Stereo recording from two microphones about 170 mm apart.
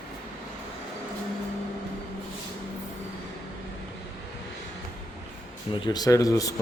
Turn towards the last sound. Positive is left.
turn(degrees=20)  # may be behind; listen again after turning